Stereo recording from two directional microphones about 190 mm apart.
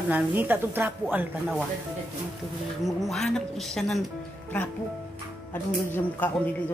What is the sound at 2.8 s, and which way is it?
A woman's voice, centre (ahead or behind).